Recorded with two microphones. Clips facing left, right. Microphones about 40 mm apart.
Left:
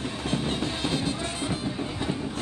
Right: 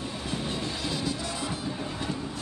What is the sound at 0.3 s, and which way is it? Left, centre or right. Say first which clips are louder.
Music: left 4 dB; left.